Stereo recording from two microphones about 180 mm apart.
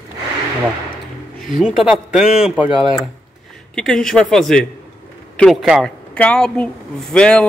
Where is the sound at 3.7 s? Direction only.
5° left (ahead or behind).